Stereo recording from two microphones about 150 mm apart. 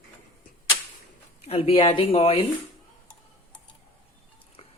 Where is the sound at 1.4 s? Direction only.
40° left (ahead or behind).